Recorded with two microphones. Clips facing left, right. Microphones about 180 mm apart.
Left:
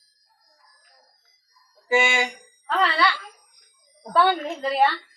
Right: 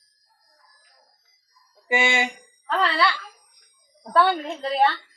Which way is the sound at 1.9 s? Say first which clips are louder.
Left 1 dB; 20° right (ahead or behind).